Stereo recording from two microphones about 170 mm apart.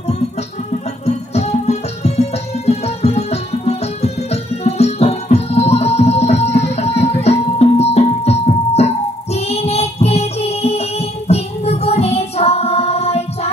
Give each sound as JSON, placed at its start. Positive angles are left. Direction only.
{"t": 1.0, "sound": "music", "side_deg": 40}